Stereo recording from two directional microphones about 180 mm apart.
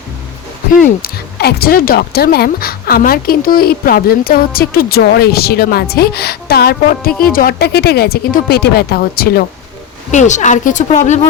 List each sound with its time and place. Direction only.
0.8 s speech: 60° left (ahead or behind)
10.1 s a woman's voice: 40° left (ahead or behind)